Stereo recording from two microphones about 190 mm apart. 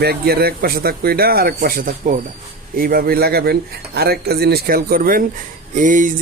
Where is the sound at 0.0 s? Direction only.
55° right (ahead or behind).